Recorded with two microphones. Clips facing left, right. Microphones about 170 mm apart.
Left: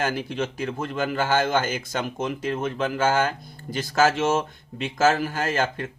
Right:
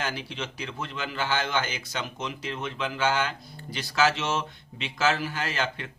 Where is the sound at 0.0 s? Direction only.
50° left (ahead or behind).